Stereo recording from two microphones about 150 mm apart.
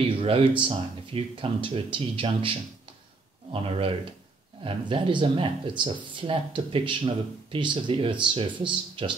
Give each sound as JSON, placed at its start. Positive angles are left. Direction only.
{"t": 0.1, "sound": "speech", "side_deg": -35}